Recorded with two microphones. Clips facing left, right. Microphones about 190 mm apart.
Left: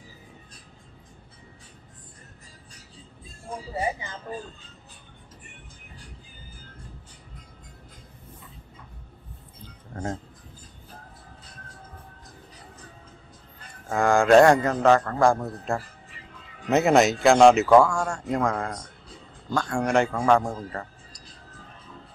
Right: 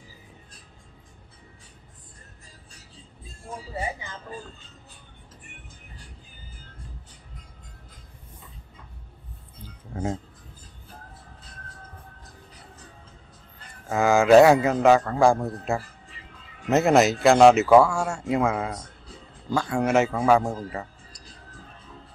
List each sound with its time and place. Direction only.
9.9 s music: 10° right (ahead or behind)
13.8 s a man's voice: 5° right (ahead or behind)